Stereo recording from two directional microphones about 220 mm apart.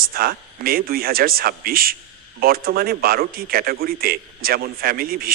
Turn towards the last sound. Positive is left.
turn(degrees=-45)  # may be behind; listen again after turning